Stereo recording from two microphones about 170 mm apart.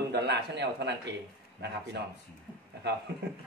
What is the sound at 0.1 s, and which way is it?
Speech, 80° right.